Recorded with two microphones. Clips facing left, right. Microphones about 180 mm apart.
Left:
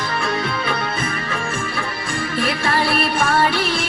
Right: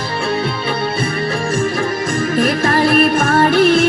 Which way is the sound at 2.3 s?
45° right (ahead or behind).